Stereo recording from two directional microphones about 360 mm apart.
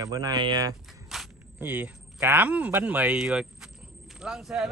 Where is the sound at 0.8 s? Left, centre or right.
Centre.